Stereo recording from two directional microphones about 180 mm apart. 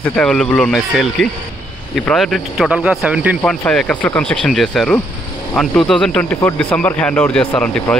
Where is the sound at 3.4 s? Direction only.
5° left (ahead or behind).